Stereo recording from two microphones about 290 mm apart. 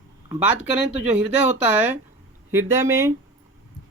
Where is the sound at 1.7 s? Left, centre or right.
Centre.